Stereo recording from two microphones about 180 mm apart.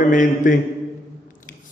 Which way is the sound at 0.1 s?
45° left (ahead or behind).